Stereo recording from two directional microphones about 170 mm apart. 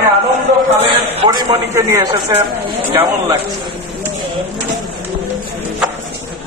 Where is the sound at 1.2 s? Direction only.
25° right (ahead or behind).